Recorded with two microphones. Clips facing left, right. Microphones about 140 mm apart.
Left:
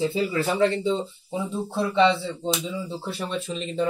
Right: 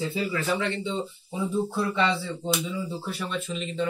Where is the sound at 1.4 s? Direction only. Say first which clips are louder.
Even; 25° left (ahead or behind).